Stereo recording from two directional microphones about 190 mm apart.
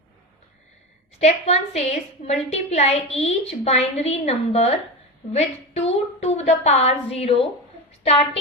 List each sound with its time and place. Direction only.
1.2 s a woman's voice: 35° left (ahead or behind)